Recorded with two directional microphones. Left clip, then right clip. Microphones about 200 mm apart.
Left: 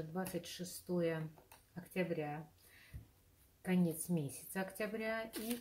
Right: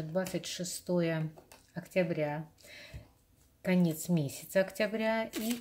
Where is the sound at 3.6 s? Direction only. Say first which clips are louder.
Right 7 dB; 35° right (ahead or behind).